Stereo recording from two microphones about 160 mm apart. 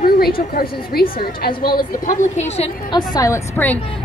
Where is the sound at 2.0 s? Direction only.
45° left (ahead or behind).